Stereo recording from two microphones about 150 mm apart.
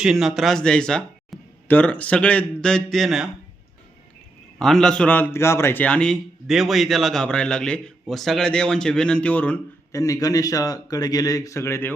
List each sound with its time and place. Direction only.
0.0 s a man's voice: centre (ahead or behind)
4.6 s a man's voice: 5° left (ahead or behind)
9.9 s speech: 20° left (ahead or behind)